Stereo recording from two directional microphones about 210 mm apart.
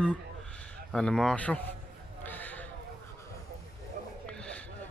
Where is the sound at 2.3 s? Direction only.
10° left (ahead or behind).